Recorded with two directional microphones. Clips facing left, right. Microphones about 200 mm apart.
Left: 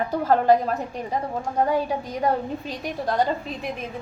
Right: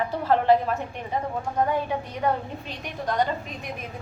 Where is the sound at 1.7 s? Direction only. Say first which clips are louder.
Left 3 dB; 35° left (ahead or behind).